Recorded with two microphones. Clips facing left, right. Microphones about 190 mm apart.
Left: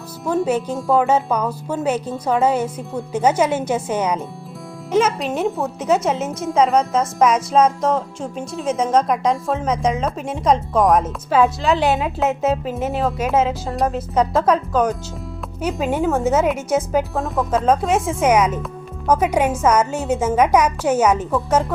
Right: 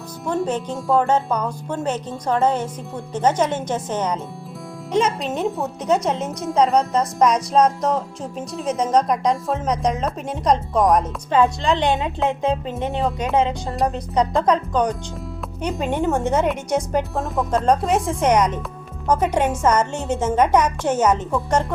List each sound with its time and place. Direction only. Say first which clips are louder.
0.3 s a woman's voice: left 3 dB; 5° left (ahead or behind)